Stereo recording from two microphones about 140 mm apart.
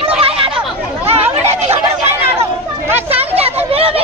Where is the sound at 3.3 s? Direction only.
45° right (ahead or behind).